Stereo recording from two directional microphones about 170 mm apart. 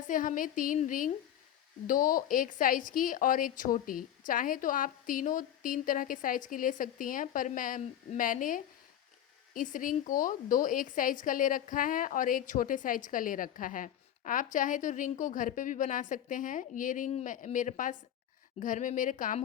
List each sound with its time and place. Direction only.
0.1 s a woman's voice: 50° left (ahead or behind)